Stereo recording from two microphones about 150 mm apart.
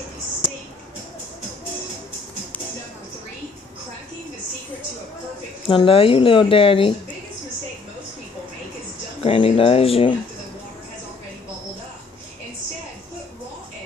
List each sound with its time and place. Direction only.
5.7 s speech: 35° left (ahead or behind)
9.2 s speech: 40° left (ahead or behind)